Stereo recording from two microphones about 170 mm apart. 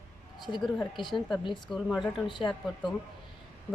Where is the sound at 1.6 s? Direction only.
Centre (ahead or behind).